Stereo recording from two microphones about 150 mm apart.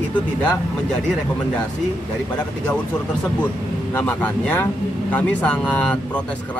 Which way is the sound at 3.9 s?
15° left (ahead or behind).